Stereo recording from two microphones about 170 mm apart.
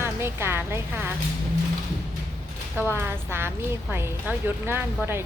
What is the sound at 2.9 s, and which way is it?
A woman's voice, 15° right (ahead or behind).